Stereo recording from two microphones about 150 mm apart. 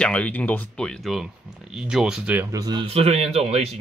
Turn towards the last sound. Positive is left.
turn(degrees=-45)  # may be behind; listen again after turning